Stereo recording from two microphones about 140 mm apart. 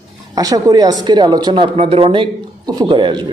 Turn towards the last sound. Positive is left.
turn(degrees=-35)  # may be behind; listen again after turning